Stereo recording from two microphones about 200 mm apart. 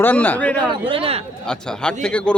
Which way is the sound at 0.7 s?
25° right (ahead or behind).